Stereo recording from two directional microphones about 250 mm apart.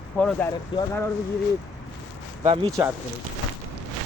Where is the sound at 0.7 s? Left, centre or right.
Centre.